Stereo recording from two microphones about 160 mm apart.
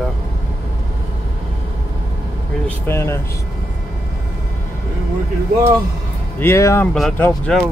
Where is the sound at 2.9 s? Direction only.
15° left (ahead or behind).